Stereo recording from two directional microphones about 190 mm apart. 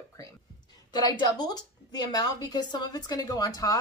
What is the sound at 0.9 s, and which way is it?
Speech, 20° left (ahead or behind).